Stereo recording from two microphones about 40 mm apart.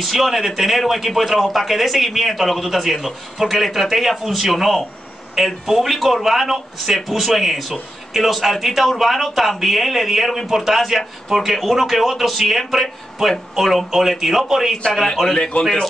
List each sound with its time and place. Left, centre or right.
0.0 s a man's voice: centre
15.5 s a man's voice: left